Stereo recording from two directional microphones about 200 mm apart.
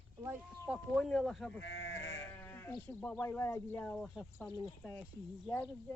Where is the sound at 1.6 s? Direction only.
65° left (ahead or behind).